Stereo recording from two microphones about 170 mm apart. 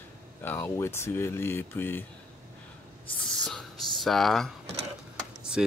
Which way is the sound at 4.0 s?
Centre (ahead or behind).